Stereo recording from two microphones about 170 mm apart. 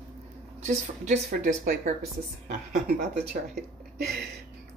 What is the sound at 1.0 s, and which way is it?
Speech, 45° right (ahead or behind).